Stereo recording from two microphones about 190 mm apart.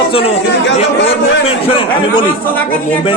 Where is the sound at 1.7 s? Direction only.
25° left (ahead or behind).